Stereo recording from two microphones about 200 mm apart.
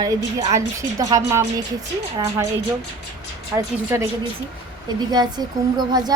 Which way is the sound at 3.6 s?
15° right (ahead or behind).